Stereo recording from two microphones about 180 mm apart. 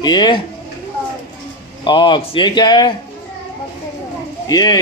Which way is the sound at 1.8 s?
25° left (ahead or behind).